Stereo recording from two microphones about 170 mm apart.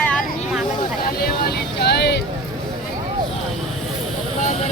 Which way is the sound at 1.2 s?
70° left (ahead or behind).